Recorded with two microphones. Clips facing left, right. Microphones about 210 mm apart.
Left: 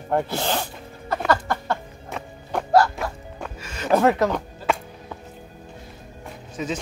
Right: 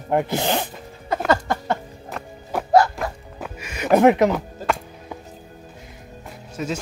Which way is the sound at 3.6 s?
15° right (ahead or behind).